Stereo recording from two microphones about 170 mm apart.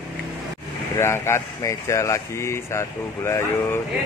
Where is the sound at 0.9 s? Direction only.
15° left (ahead or behind).